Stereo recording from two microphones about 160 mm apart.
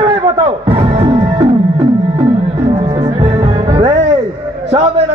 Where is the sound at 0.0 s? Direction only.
35° right (ahead or behind).